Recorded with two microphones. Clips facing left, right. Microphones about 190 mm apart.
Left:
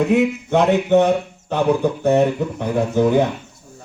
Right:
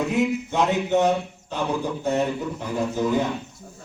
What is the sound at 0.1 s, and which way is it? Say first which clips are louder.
Speech: left 6 dB; 65° left (ahead or behind).